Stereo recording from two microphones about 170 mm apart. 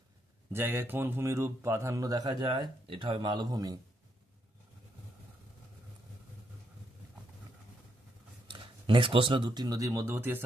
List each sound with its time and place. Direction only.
0.5 s speech: 15° right (ahead or behind)
8.5 s speech: 30° right (ahead or behind); by 10.4 s 15° right (ahead or behind)